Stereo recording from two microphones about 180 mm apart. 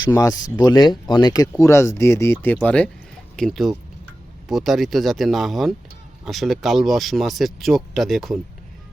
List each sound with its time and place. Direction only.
0.0 s speech: 20° left (ahead or behind); by 8.4 s centre (ahead or behind)